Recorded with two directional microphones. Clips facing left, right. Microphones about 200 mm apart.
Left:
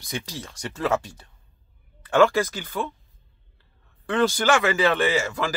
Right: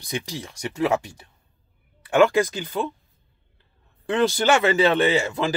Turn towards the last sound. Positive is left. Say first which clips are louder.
# right 3 dB
turn(degrees=-20)  # may be behind; listen again after turning